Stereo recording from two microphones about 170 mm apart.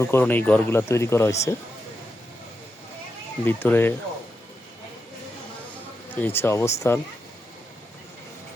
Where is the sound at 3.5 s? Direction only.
10° left (ahead or behind).